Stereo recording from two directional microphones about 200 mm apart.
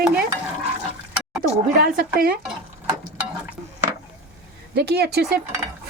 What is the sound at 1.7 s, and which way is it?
Speech, 50° right (ahead or behind).